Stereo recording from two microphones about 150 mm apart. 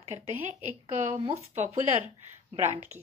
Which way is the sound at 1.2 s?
45° right (ahead or behind).